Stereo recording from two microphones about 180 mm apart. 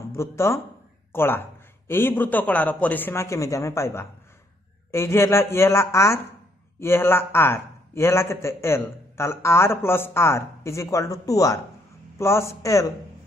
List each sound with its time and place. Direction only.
0.1 s a man's voice: 15° left (ahead or behind)